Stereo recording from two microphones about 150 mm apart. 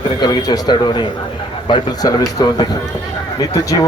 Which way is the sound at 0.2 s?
25° left (ahead or behind).